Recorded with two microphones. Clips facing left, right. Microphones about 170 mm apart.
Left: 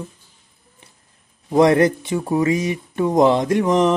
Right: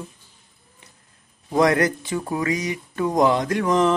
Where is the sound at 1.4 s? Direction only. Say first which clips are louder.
Left 5 dB; 25° left (ahead or behind).